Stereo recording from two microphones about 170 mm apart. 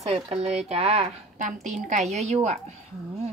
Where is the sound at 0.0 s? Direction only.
40° right (ahead or behind).